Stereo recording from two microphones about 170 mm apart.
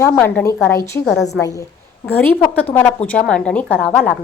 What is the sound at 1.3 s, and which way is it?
A woman's voice, 20° left (ahead or behind).